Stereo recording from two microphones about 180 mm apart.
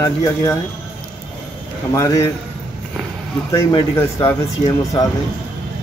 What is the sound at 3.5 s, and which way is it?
Speech, 15° left (ahead or behind).